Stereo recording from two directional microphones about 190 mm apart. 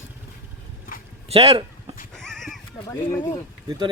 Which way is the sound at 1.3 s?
30° right (ahead or behind).